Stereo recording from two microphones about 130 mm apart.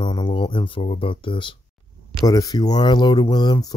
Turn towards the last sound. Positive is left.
turn(degrees=30)  # may be behind; listen again after turning